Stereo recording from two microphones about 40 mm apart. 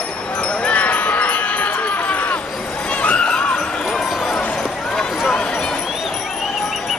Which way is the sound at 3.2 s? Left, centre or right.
Left.